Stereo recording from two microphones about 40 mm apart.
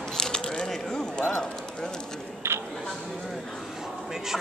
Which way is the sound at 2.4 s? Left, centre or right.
Right.